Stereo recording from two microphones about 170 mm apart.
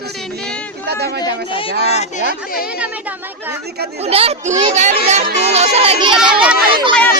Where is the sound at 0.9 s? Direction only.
75° right (ahead or behind).